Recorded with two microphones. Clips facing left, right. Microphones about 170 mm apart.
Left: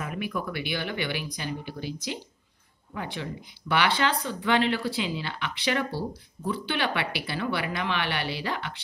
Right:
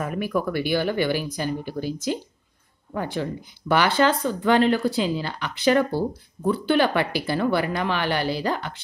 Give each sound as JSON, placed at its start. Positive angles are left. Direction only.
{"t": 0.0, "sound": "speech", "side_deg": -45}